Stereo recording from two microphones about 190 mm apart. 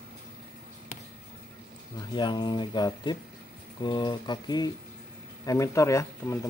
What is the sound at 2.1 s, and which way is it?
Speech, 25° left (ahead or behind).